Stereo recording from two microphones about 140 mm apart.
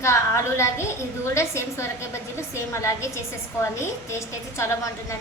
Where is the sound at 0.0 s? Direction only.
20° left (ahead or behind).